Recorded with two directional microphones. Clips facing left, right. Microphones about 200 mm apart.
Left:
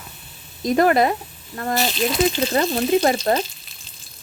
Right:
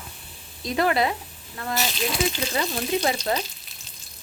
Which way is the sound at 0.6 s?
50° left (ahead or behind).